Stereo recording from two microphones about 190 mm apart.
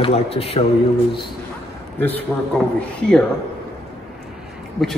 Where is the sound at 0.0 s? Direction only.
30° left (ahead or behind).